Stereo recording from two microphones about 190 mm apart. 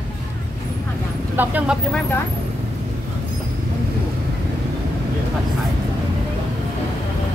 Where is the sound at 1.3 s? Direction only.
10° right (ahead or behind).